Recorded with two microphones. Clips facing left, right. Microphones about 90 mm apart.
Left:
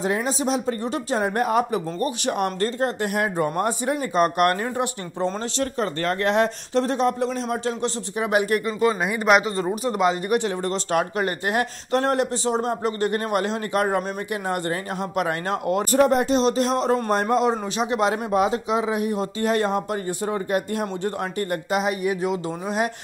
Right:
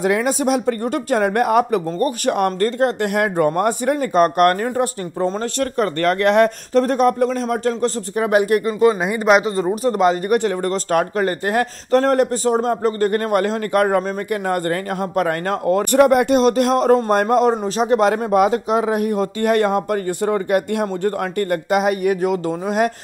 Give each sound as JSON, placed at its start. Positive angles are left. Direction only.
{"t": 0.0, "sound": "speech", "side_deg": -65}
{"t": 5.6, "sound": "speech", "side_deg": -65}
{"t": 6.7, "sound": "speech", "side_deg": -50}
{"t": 9.0, "sound": "speech", "side_deg": 0}
{"t": 9.8, "sound": "speech", "side_deg": -45}
{"t": 15.8, "sound": "speech", "side_deg": -65}
{"t": 20.8, "sound": "speech", "side_deg": -55}